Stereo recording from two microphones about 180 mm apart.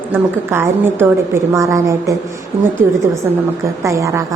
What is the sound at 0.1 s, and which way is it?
A woman's voice, 15° right (ahead or behind).